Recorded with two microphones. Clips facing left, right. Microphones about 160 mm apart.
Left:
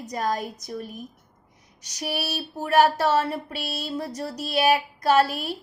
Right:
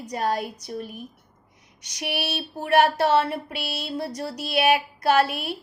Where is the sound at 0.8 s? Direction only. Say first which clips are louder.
Even; 35° left (ahead or behind).